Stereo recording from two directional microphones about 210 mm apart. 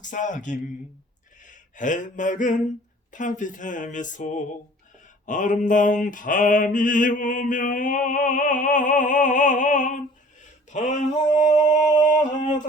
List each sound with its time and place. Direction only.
0.0 s mantra: 35° left (ahead or behind)
1.5 s a sound: 40° left (ahead or behind)
3.1 s mantra: 35° left (ahead or behind)